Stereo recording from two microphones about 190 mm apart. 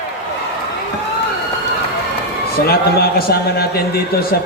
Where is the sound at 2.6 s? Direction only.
55° left (ahead or behind).